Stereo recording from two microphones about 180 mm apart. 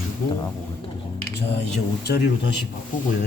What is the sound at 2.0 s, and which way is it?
Speech, 65° left (ahead or behind).